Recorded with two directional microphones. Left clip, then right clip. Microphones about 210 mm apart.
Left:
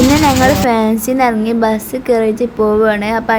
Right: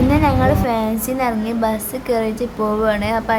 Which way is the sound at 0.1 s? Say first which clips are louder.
Left 5 dB; 25° left (ahead or behind).